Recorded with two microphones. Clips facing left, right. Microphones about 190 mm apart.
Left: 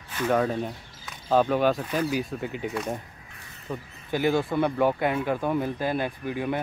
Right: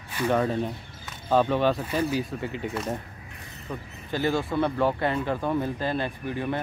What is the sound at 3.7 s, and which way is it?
Speech, 15° left (ahead or behind).